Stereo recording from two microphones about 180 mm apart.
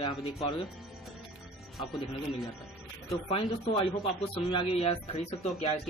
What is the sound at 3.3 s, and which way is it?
Speech, 25° left (ahead or behind).